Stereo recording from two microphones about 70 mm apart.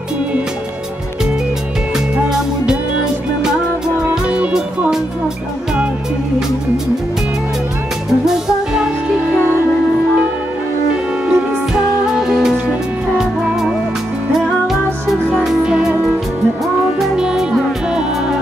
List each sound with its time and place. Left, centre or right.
2.1 s music: centre
4.1 s music: centre
8.3 s music: centre
11.2 s music: centre
17.0 s music: centre